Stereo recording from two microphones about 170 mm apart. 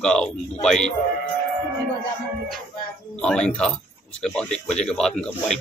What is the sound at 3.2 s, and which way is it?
Speech, 5° left (ahead or behind).